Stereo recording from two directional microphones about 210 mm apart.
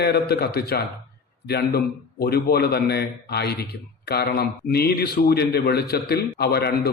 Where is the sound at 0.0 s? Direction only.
50° left (ahead or behind).